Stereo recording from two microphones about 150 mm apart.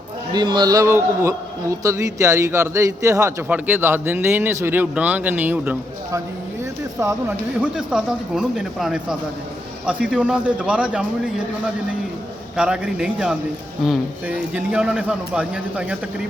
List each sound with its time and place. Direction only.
0.3 s a man's voice: 30° right (ahead or behind); by 6.1 s 10° right (ahead or behind)
7.6 s a man's voice: 5° right (ahead or behind)
12.5 s a man's voice: 5° right (ahead or behind)